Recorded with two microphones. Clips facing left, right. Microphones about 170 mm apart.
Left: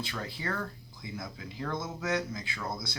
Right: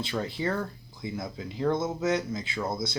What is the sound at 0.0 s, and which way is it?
Speech, 25° right (ahead or behind).